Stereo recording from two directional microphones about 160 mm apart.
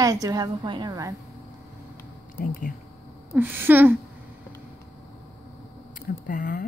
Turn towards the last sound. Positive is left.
turn(degrees=55)  # may be behind; listen again after turning